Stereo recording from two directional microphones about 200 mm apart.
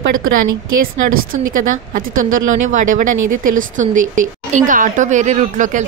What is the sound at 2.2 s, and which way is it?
Speech, 40° right (ahead or behind).